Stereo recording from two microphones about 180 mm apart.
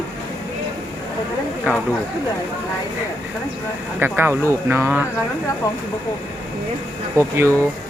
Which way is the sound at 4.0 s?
10° right (ahead or behind).